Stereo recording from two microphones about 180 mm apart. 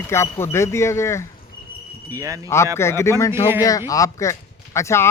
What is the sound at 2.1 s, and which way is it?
Speech, 20° right (ahead or behind).